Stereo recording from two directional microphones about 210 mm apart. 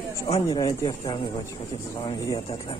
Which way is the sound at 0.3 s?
20° left (ahead or behind).